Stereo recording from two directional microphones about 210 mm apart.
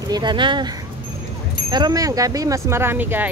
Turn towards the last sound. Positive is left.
turn(degrees=-10)  # may be behind; listen again after turning